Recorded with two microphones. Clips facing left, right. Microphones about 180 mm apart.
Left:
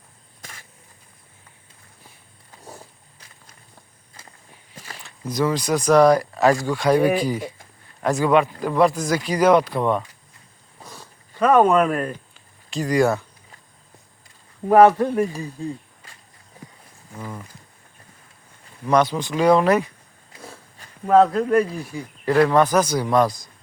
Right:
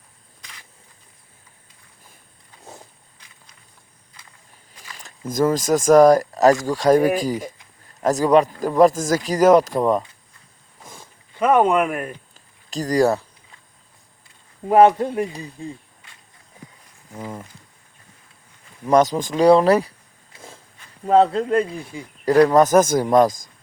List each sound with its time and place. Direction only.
4.1 s walk: 45° left (ahead or behind)
4.9 s speech: 45° right (ahead or behind)
10.8 s zipper: 20° right (ahead or behind)
12.3 s a sound: 40° right (ahead or behind)
14.7 s speech: 20° right (ahead or behind)
18.9 s speech: 40° right (ahead or behind)
21.1 s speech: 30° right (ahead or behind)
22.3 s speech: 40° right (ahead or behind)